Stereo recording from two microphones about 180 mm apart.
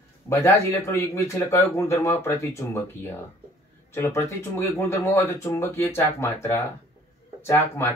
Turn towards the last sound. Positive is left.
turn(degrees=15)  # may be behind; listen again after turning